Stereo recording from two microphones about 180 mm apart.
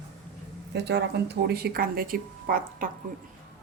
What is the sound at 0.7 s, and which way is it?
A woman's voice, 70° right (ahead or behind).